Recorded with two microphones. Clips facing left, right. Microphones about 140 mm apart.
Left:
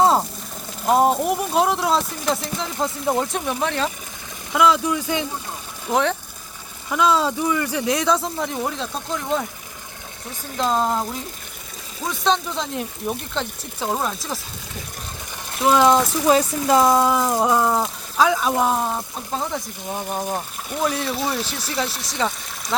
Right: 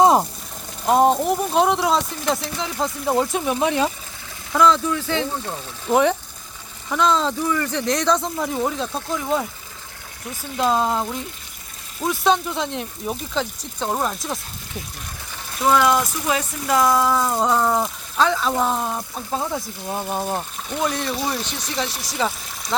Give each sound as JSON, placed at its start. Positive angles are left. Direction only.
{"t": 0.0, "sound": "a sound", "side_deg": -15}
{"t": 0.9, "sound": "speech", "side_deg": 0}
{"t": 3.5, "sound": "speech", "side_deg": -15}
{"t": 4.5, "sound": "speech", "side_deg": 10}
{"t": 5.9, "sound": "speech", "side_deg": -10}
{"t": 6.9, "sound": "speech", "side_deg": 5}
{"t": 10.6, "sound": "speech", "side_deg": -5}
{"t": 15.7, "sound": "speech", "side_deg": 30}
{"t": 20.7, "sound": "speech", "side_deg": 0}